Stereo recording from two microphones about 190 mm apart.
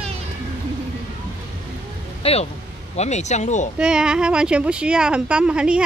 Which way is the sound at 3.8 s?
5° right (ahead or behind).